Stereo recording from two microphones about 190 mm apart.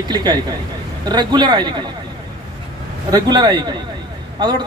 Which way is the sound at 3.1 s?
20° right (ahead or behind).